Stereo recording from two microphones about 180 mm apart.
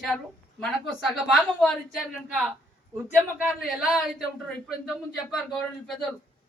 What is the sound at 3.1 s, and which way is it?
Speech, 5° right (ahead or behind).